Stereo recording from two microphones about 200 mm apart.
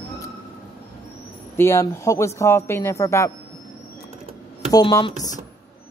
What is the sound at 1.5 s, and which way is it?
A man's voice, 10° left (ahead or behind).